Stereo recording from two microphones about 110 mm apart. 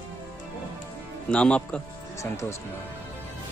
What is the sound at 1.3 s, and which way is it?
Speech, 10° left (ahead or behind).